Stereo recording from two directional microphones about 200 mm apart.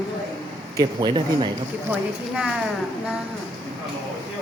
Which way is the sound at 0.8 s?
20° right (ahead or behind).